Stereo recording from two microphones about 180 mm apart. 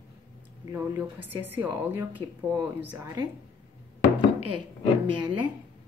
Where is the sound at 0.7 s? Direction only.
10° right (ahead or behind).